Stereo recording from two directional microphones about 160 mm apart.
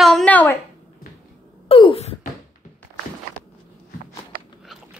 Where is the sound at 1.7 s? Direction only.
35° left (ahead or behind).